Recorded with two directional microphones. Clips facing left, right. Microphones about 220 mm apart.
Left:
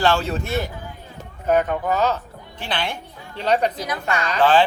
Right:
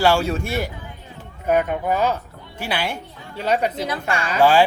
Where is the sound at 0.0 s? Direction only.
10° right (ahead or behind).